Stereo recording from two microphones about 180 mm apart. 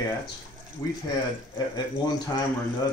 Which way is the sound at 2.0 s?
20° left (ahead or behind).